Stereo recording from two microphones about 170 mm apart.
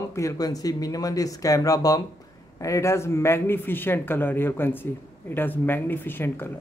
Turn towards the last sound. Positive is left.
turn(degrees=10)  # may be behind; listen again after turning